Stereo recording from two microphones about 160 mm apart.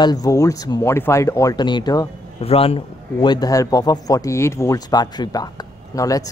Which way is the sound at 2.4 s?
35° left (ahead or behind).